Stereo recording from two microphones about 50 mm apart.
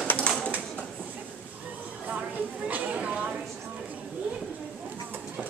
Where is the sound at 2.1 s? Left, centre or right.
Right.